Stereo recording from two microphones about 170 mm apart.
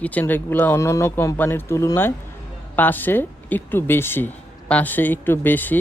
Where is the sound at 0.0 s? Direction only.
10° left (ahead or behind).